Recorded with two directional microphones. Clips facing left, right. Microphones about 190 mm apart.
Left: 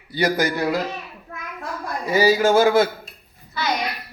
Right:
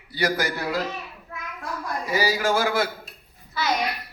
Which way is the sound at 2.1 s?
25° left (ahead or behind).